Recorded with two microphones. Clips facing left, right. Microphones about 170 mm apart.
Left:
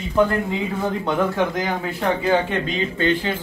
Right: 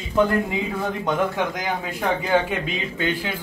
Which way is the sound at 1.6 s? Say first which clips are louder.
Left 3 dB; 15° right (ahead or behind).